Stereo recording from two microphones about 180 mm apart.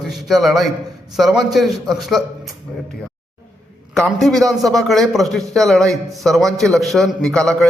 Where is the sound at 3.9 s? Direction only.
Centre (ahead or behind).